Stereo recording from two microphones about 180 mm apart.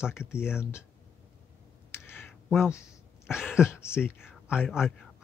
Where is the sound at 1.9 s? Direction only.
15° left (ahead or behind).